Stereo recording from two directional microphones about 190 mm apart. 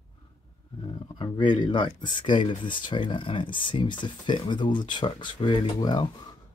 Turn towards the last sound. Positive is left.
turn(degrees=25)  # may be behind; listen again after turning